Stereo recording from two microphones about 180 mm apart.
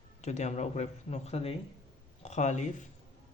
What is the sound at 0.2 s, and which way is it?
Speech, 40° left (ahead or behind).